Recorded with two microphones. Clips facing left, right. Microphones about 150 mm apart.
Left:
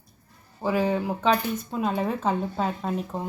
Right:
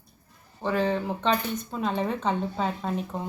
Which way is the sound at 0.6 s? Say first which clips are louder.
Left 1 dB; 10° left (ahead or behind).